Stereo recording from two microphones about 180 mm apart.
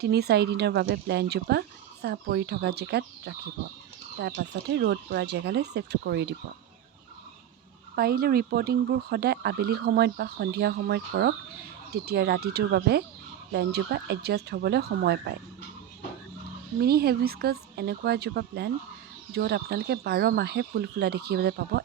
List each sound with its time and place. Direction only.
0.0 s speech: 65° right (ahead or behind)
7.9 s speech: 55° right (ahead or behind)
16.8 s speech: 60° right (ahead or behind)